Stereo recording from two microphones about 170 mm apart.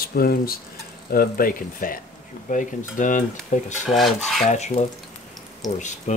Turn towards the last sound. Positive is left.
turn(degrees=45)  # may be behind; listen again after turning